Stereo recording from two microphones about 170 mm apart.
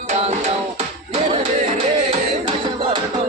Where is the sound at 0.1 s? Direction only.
40° right (ahead or behind).